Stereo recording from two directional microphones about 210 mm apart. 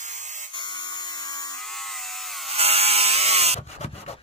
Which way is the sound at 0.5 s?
20° left (ahead or behind).